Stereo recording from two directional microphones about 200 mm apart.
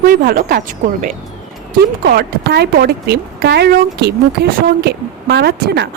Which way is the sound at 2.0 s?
55° right (ahead or behind).